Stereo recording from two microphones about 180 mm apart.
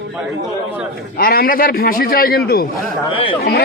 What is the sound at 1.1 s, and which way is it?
A man's voice, 55° left (ahead or behind).